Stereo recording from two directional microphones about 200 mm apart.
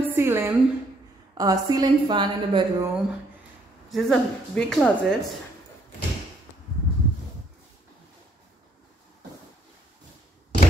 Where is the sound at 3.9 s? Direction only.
Centre (ahead or behind).